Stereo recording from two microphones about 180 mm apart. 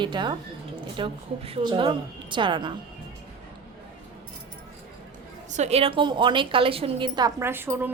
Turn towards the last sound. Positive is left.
turn(degrees=-10)  # may be behind; listen again after turning